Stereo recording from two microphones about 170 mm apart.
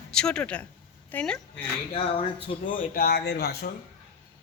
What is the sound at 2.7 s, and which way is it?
Speech, 55° left (ahead or behind).